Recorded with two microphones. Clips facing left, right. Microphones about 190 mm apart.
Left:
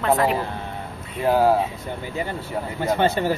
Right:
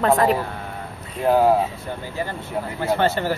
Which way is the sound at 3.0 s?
15° left (ahead or behind).